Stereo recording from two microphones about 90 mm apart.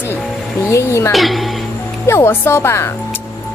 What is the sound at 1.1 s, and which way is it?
Speech, centre (ahead or behind).